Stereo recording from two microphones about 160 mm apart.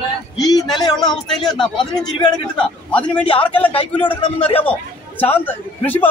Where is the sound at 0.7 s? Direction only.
25° left (ahead or behind).